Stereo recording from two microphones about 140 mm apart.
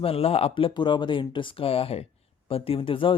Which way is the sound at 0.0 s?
45° left (ahead or behind).